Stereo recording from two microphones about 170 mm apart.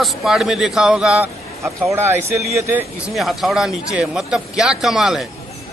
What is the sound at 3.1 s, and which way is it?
A man's voice, centre (ahead or behind).